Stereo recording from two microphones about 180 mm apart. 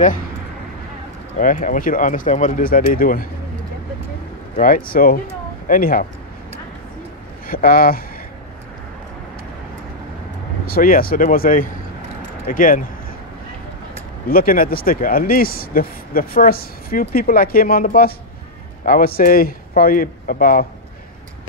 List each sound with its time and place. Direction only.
1.4 s speech: 45° left (ahead or behind)
4.6 s speech: 50° left (ahead or behind)
7.4 s speech: 55° left (ahead or behind)
10.6 s speech: 55° left (ahead or behind)
14.2 s speech: 55° left (ahead or behind)